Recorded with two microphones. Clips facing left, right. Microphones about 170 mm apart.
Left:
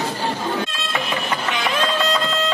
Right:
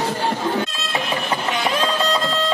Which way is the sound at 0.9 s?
35° right (ahead or behind).